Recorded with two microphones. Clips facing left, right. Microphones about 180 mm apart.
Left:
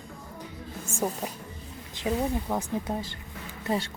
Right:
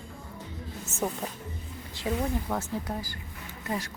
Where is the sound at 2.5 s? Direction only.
20° left (ahead or behind).